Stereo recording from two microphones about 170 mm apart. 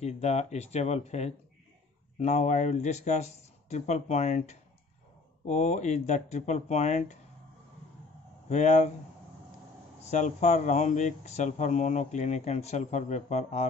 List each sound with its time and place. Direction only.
0.0 s speech: 40° left (ahead or behind)
8.5 s speech: 45° left (ahead or behind)
10.0 s speech: 45° left (ahead or behind)